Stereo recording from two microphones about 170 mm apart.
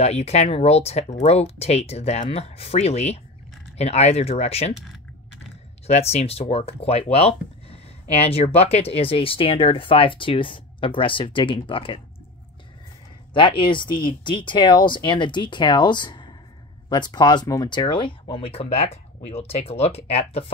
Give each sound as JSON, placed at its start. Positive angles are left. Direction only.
{"t": 0.0, "sound": "speech", "side_deg": 40}
{"t": 5.9, "sound": "speech", "side_deg": 35}
{"t": 13.3, "sound": "speech", "side_deg": 30}